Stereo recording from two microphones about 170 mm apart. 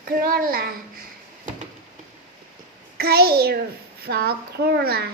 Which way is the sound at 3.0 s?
65° right (ahead or behind).